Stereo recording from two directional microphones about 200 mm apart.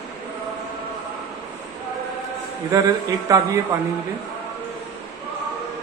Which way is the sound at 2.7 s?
15° right (ahead or behind).